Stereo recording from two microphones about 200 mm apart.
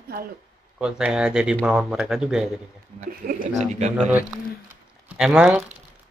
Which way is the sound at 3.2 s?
40° right (ahead or behind).